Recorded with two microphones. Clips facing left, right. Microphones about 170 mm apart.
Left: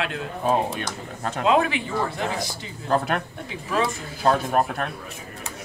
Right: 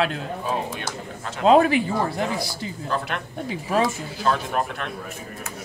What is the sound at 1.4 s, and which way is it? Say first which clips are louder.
Speech: right 5 dB; 40° right (ahead or behind).